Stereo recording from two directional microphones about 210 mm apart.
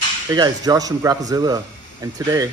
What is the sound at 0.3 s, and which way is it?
Speech, 20° right (ahead or behind).